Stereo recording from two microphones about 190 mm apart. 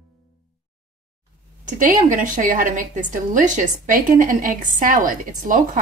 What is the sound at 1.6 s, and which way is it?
A woman's voice, 40° right (ahead or behind).